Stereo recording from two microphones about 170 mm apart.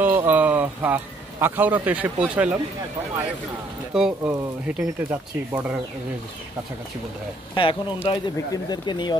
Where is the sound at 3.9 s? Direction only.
5° right (ahead or behind).